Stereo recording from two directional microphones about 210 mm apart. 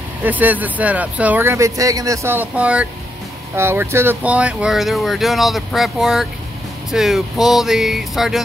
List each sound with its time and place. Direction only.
0.2 s speech: 10° right (ahead or behind)